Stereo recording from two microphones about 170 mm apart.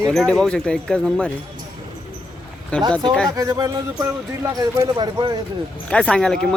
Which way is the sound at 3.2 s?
20° right (ahead or behind).